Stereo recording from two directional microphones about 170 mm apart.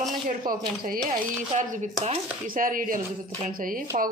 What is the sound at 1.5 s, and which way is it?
Speech, 45° right (ahead or behind).